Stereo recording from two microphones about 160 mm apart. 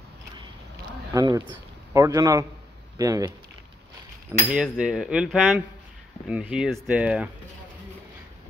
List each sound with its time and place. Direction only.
1.1 s a man's voice: 20° right (ahead or behind)
4.5 s a sound: 5° right (ahead or behind)
6.2 s speech: 5° right (ahead or behind)